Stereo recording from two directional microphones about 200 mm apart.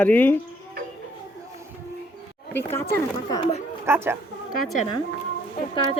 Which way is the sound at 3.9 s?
10° right (ahead or behind).